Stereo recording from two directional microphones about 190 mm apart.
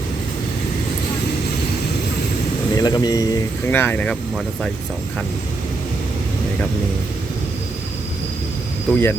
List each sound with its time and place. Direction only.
2.7 s speech: 20° left (ahead or behind); by 4.7 s centre (ahead or behind)
8.9 s speech: 10° left (ahead or behind)